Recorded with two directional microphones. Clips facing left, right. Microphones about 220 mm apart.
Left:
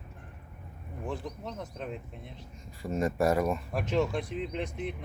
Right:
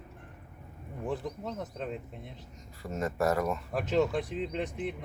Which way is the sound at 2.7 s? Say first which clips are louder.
Left 4 dB; 15° left (ahead or behind).